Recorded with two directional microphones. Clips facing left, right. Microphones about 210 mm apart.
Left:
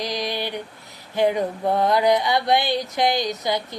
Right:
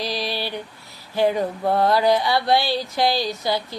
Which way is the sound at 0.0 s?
20° left (ahead or behind).